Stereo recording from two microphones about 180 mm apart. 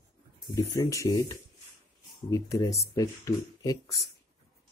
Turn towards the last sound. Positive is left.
turn(degrees=20)  # may be behind; listen again after turning